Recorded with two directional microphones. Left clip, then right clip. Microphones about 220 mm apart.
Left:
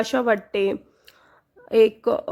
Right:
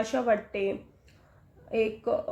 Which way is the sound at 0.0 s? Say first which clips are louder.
Left 5 dB; 50° left (ahead or behind).